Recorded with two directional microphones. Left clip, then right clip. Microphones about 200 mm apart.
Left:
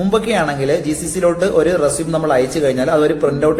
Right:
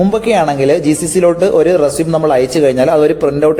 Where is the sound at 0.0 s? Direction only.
30° right (ahead or behind).